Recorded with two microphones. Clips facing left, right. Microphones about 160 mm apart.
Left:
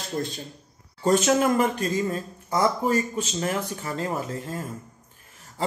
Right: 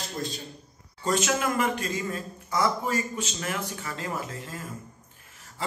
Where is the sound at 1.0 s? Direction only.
40° left (ahead or behind).